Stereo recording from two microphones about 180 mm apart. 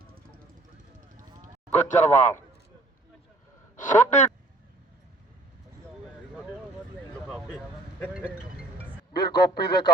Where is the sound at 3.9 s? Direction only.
40° left (ahead or behind).